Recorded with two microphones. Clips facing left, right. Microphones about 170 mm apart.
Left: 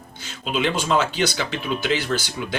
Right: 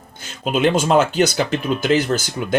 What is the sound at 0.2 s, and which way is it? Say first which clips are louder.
Speech: right 6 dB; 50° right (ahead or behind).